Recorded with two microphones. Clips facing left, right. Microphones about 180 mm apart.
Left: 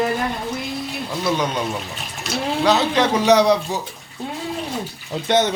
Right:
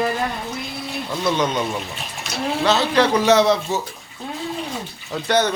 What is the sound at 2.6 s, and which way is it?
Speech, 15° left (ahead or behind).